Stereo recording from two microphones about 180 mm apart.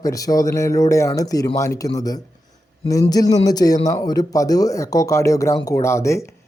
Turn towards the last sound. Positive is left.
turn(degrees=15)  # may be behind; listen again after turning